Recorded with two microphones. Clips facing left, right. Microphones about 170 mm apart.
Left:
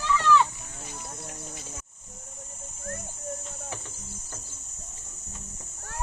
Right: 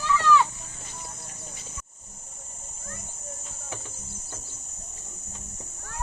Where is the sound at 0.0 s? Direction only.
Centre (ahead or behind).